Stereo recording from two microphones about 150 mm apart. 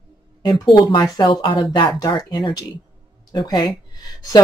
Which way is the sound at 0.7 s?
25° left (ahead or behind).